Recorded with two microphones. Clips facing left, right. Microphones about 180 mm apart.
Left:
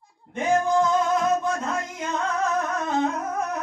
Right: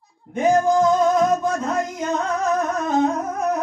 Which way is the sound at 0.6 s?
40° right (ahead or behind).